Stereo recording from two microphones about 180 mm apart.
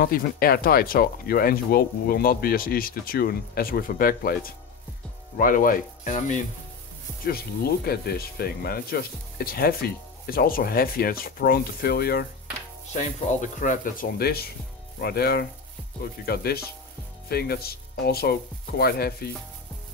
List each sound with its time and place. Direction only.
0.0 s speech: 55° left (ahead or behind)
7.2 s speech: 60° left (ahead or behind)
13.6 s speech: 50° left (ahead or behind)